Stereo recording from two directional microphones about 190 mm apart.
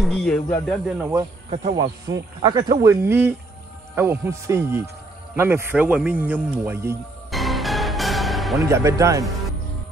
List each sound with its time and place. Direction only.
0.0 s speech: centre (ahead or behind)
1.5 s speech: 35° right (ahead or behind)
2.4 s speech: 20° right (ahead or behind)
7.2 s music: centre (ahead or behind)
8.5 s speech: 15° right (ahead or behind)
9.2 s music: centre (ahead or behind)